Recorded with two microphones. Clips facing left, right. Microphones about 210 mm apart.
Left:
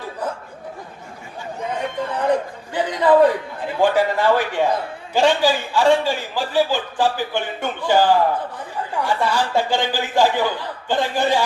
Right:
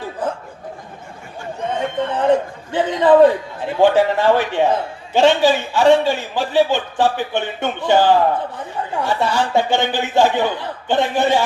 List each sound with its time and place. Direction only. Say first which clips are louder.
1.7 s a man's voice: right 4 dB; 25° right (ahead or behind)